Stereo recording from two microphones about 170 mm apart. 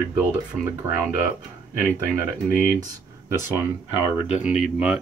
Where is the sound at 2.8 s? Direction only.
15° right (ahead or behind).